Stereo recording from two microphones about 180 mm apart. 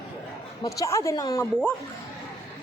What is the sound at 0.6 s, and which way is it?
Speech, 15° left (ahead or behind).